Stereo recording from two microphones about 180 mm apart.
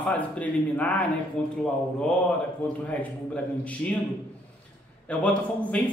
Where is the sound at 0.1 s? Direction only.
10° left (ahead or behind).